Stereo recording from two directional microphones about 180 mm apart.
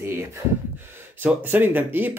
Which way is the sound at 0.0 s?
15° right (ahead or behind).